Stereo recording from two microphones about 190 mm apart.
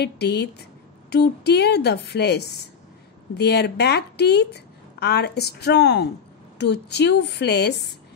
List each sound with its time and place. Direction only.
0.0 s a woman's voice: 60° left (ahead or behind)